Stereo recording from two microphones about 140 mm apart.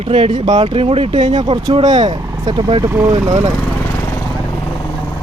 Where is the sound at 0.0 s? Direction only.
40° right (ahead or behind).